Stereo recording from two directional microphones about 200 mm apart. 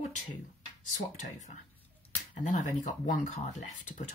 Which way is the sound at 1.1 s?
40° left (ahead or behind).